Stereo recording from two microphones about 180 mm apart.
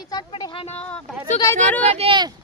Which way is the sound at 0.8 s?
5° left (ahead or behind).